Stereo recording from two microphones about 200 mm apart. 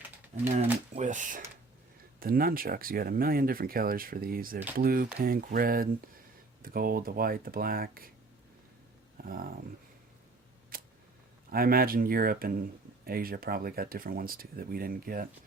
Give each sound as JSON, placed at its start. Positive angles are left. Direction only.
{"t": 0.5, "sound": "speech", "side_deg": -35}
{"t": 9.2, "sound": "speech", "side_deg": -45}
{"t": 10.7, "sound": "a sound", "side_deg": -45}
{"t": 11.5, "sound": "speech", "side_deg": -45}